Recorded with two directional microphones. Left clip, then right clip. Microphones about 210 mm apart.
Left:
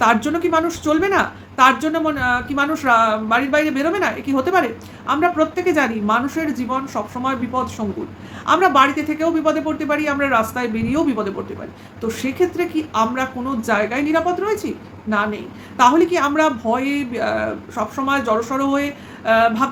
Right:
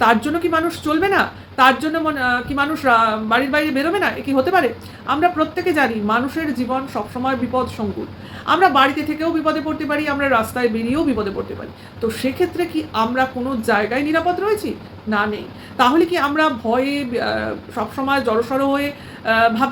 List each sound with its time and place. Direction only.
0.3 s a woman's voice: 5° left (ahead or behind)